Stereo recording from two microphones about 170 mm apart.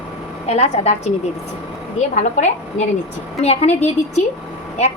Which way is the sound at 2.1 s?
45° left (ahead or behind).